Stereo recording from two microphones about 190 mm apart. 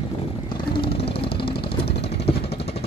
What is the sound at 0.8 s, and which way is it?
Vehicle, 30° left (ahead or behind).